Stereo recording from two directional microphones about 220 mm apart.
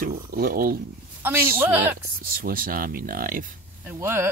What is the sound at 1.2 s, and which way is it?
Speech, 10° right (ahead or behind).